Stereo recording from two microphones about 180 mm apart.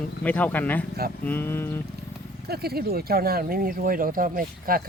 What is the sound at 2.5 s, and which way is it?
Speech, 60° right (ahead or behind).